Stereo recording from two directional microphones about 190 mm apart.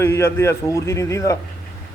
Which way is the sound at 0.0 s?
15° left (ahead or behind).